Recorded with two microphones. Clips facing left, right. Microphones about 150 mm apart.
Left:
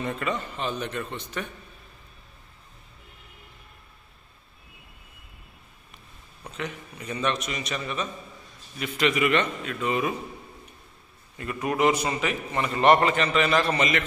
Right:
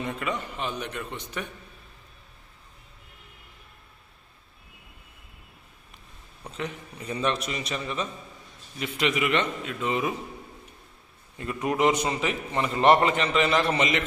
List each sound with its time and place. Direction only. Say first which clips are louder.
0.0 s a man's voice: left 2 dB; 15° right (ahead or behind)
6.5 s a man's voice: even; 30° right (ahead or behind)
11.3 s a man's voice: even; 20° right (ahead or behind)